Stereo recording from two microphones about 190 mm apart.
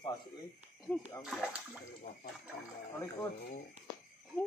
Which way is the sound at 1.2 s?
5° right (ahead or behind).